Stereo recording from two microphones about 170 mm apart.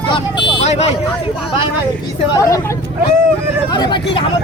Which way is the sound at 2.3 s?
20° left (ahead or behind).